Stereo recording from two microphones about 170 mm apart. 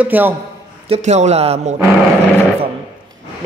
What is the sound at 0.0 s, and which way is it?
Speech, 10° right (ahead or behind).